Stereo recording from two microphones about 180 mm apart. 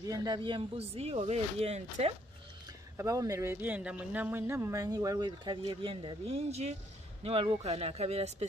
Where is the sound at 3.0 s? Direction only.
20° right (ahead or behind).